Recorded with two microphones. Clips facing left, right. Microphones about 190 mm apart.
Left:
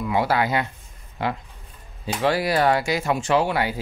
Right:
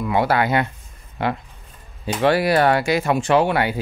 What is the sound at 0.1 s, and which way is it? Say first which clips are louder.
Speech: right 3 dB; 60° right (ahead or behind).